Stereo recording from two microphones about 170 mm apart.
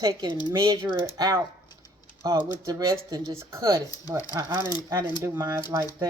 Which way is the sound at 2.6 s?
20° right (ahead or behind).